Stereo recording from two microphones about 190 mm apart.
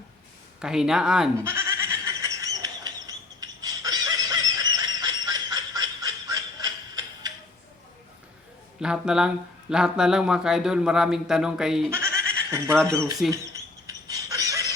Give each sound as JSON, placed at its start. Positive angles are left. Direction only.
{"t": 0.6, "sound": "bleat", "side_deg": -5}
{"t": 8.8, "sound": "speech", "side_deg": -5}
{"t": 11.9, "sound": "bleat", "side_deg": -15}
{"t": 12.9, "sound": "speech", "side_deg": -15}
{"t": 13.3, "sound": "a sound", "side_deg": -15}